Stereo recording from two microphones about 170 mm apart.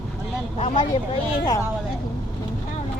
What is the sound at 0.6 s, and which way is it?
Speech, 30° left (ahead or behind).